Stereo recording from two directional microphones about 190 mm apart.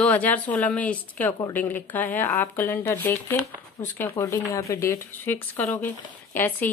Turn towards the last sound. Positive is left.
turn(degrees=10)  # may be behind; listen again after turning